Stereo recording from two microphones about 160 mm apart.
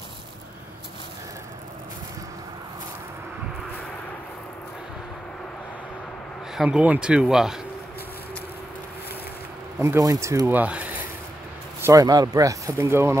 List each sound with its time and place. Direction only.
6.5 s speech: 5° right (ahead or behind)
9.8 s speech: 20° right (ahead or behind)
11.8 s speech: 20° right (ahead or behind)